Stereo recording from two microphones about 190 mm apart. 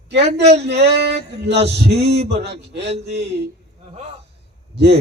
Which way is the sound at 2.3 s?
60° right (ahead or behind).